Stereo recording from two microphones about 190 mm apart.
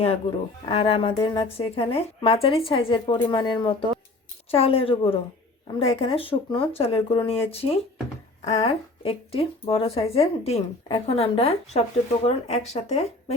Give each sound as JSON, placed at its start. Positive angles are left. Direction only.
{"t": 0.6, "sound": "speech", "side_deg": 30}